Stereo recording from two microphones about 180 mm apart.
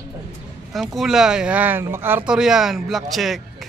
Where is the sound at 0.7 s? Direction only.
Centre (ahead or behind).